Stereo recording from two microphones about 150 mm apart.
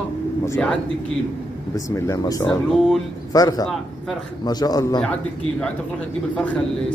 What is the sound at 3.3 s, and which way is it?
A man's voice, 25° left (ahead or behind).